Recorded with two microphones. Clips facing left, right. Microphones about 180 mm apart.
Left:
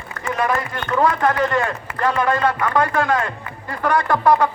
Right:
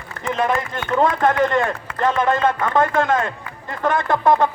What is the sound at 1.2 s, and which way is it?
A man's voice, 25° right (ahead or behind).